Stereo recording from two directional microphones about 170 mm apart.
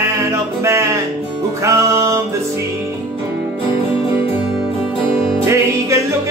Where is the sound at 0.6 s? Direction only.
15° right (ahead or behind).